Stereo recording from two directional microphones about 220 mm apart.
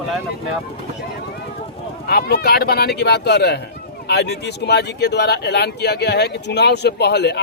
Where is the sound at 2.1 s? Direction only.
45° left (ahead or behind).